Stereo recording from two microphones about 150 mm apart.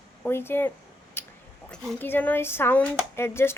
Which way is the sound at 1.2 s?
15° left (ahead or behind).